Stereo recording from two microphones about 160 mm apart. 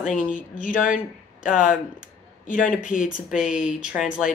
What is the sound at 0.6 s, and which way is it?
Speech, 55° left (ahead or behind).